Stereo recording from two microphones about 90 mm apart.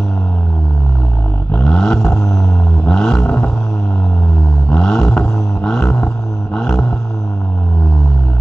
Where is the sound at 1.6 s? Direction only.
5° left (ahead or behind).